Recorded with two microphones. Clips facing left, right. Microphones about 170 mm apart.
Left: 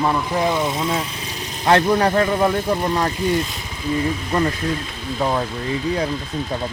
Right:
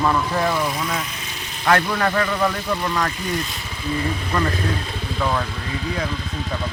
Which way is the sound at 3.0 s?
25° left (ahead or behind).